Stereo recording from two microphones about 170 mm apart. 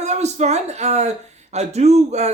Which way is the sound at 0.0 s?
40° right (ahead or behind).